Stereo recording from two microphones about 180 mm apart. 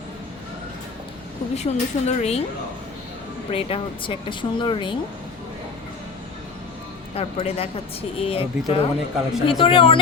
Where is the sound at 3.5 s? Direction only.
30° left (ahead or behind).